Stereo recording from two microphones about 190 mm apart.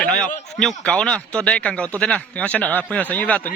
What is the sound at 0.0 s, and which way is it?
Speech, 5° left (ahead or behind).